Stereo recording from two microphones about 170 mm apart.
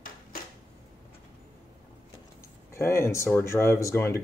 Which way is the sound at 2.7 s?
15° left (ahead or behind).